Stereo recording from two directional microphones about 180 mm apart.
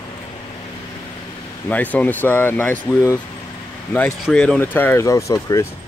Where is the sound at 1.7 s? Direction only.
10° left (ahead or behind).